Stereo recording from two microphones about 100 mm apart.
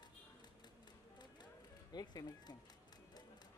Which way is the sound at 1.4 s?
40° left (ahead or behind).